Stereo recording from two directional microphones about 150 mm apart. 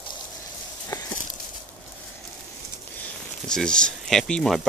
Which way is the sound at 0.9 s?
25° left (ahead or behind).